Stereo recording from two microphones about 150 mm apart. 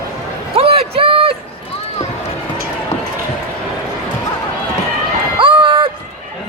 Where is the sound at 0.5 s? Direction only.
40° right (ahead or behind).